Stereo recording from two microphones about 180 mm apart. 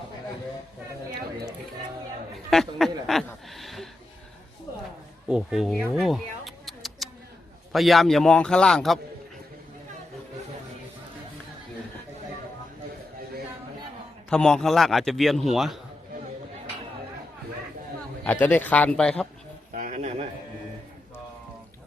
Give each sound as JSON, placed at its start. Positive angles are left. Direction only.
{"t": 2.5, "sound": "a man's voice", "side_deg": 0}
{"t": 3.5, "sound": "a sound", "side_deg": 0}
{"t": 5.3, "sound": "a man's voice", "side_deg": -5}
{"t": 14.3, "sound": "a man's voice", "side_deg": 5}
{"t": 18.2, "sound": "speech", "side_deg": 10}
{"t": 19.7, "sound": "a sound", "side_deg": -45}